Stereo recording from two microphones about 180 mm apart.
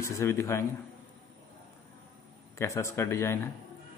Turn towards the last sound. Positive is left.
turn(degrees=15)  # may be behind; listen again after turning